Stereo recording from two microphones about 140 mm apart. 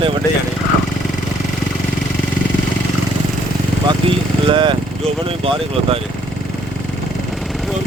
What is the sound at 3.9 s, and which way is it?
Speech, 35° right (ahead or behind).